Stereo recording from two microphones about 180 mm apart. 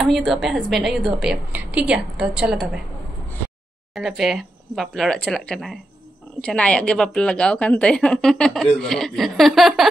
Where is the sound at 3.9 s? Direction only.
Centre (ahead or behind).